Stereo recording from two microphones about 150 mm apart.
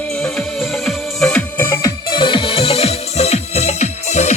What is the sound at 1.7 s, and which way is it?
Music, 25° left (ahead or behind).